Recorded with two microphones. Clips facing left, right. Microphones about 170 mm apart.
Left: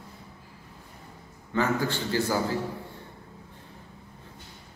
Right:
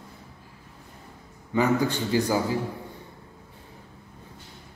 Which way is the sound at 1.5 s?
15° right (ahead or behind).